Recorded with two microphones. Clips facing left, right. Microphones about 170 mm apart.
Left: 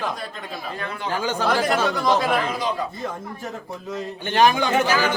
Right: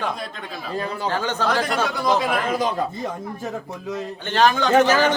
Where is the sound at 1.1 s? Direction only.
10° left (ahead or behind).